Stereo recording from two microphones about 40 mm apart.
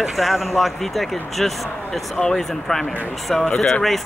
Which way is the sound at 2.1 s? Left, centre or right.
Centre.